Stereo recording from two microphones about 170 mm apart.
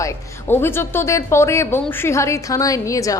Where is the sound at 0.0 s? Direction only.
15° left (ahead or behind).